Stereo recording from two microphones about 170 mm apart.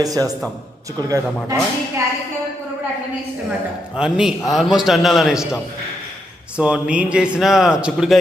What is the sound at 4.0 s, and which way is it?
A man's voice, 5° right (ahead or behind).